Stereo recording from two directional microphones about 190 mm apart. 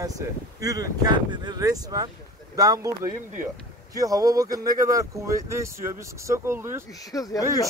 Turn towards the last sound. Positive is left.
turn(degrees=20)  # may be behind; listen again after turning